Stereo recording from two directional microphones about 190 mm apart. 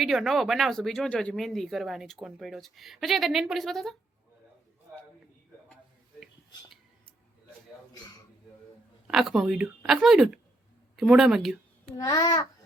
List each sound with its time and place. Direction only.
0.0 s speech: centre (ahead or behind)
9.0 s speech: centre (ahead or behind)
11.9 s a child's voice: 20° left (ahead or behind)